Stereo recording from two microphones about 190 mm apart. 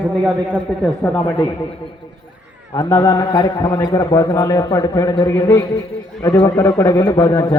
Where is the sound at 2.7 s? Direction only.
20° left (ahead or behind).